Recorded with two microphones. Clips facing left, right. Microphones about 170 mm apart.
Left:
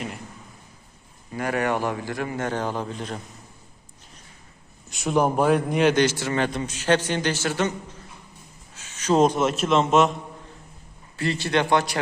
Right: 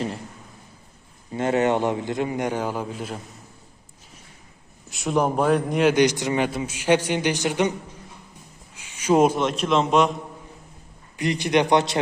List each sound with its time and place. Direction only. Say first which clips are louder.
1.3 s a man's voice: right 4 dB; 25° right (ahead or behind); by 3.2 s 5° right (ahead or behind)
4.9 s a man's voice: even; centre (ahead or behind)
5.9 s a man's voice: right 2 dB; 15° right (ahead or behind)
8.7 s a sound: right 2 dB; 10° right (ahead or behind)
9.4 s a man's voice: left 1 dB; 5° left (ahead or behind)
11.2 s a man's voice: right 3 dB; 15° right (ahead or behind)